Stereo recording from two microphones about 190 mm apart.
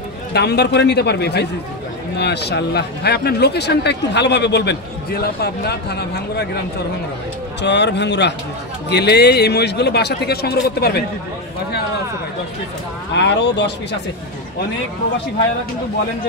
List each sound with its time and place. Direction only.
0.3 s speech: 60° left (ahead or behind)
7.6 s speech: 65° left (ahead or behind)
13.1 s speech: 65° left (ahead or behind)